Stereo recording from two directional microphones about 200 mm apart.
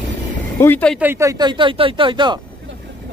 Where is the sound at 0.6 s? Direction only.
10° left (ahead or behind).